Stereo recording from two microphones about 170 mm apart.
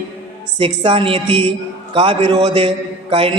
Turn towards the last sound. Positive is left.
turn(degrees=-30)  # may be behind; listen again after turning